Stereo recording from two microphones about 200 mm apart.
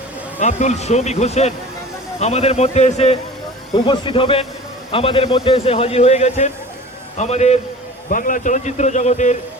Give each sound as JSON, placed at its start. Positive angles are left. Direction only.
{"t": 0.3, "sound": "a man's voice", "side_deg": 35}